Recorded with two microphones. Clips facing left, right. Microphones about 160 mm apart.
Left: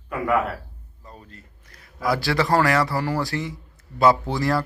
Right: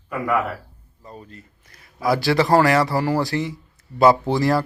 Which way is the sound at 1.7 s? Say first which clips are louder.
Right 3 dB; 25° right (ahead or behind).